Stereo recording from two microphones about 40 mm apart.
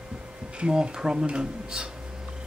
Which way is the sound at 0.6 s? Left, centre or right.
Right.